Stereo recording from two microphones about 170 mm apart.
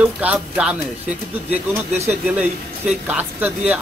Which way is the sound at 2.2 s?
10° right (ahead or behind).